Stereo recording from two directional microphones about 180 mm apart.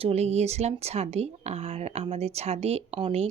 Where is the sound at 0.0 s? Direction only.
35° right (ahead or behind).